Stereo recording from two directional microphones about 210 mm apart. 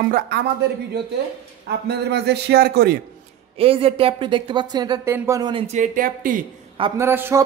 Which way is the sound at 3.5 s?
25° right (ahead or behind).